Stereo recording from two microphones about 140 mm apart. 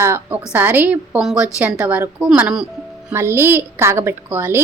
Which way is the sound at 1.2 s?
Centre (ahead or behind).